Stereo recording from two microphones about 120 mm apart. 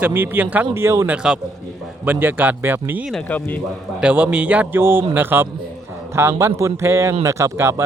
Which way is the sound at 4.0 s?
10° right (ahead or behind).